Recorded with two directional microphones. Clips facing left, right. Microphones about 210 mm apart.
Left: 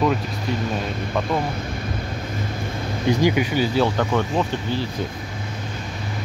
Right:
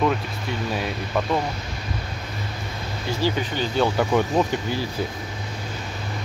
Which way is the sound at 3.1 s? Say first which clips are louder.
Left 6 dB; 15° left (ahead or behind).